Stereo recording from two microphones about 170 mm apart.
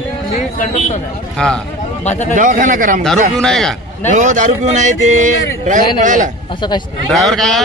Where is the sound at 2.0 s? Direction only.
45° left (ahead or behind).